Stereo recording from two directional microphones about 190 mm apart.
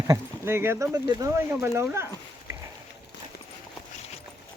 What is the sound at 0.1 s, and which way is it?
Speech, 15° right (ahead or behind).